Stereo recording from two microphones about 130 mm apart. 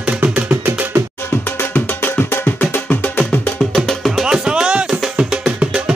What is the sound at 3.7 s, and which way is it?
Music, centre (ahead or behind).